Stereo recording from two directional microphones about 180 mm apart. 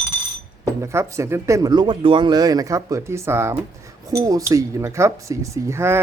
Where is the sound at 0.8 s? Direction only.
15° right (ahead or behind).